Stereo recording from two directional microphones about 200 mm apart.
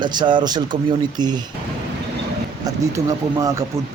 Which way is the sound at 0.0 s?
20° right (ahead or behind).